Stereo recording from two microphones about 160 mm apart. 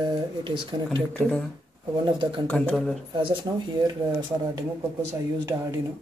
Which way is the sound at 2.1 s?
30° right (ahead or behind).